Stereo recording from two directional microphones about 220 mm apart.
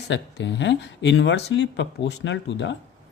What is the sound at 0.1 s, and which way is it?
Speech, 55° left (ahead or behind).